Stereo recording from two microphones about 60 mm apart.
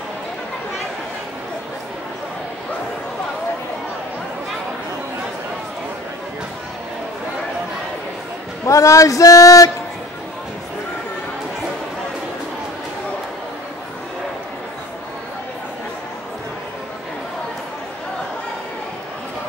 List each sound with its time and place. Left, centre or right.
8.6 s speech: left